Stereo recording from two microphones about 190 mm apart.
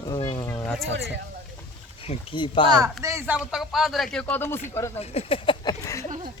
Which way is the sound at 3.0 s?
10° right (ahead or behind).